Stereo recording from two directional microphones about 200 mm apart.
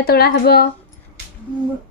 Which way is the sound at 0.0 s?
50° left (ahead or behind).